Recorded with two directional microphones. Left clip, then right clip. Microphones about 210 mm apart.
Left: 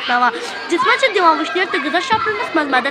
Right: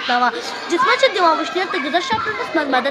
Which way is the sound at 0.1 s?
5° right (ahead or behind).